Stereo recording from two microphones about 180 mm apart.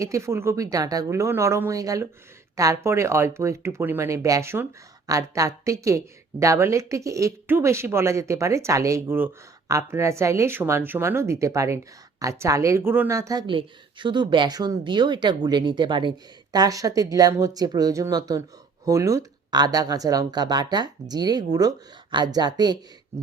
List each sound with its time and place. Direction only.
0.0 s a woman's voice: 15° right (ahead or behind)